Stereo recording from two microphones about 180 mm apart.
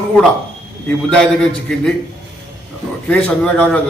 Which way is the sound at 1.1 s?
5° left (ahead or behind).